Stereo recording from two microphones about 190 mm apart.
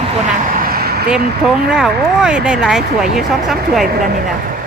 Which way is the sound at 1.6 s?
5° right (ahead or behind).